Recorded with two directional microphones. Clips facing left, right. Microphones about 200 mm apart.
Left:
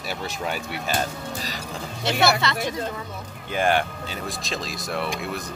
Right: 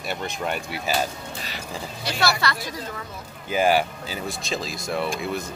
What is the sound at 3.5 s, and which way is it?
Speech, 5° right (ahead or behind).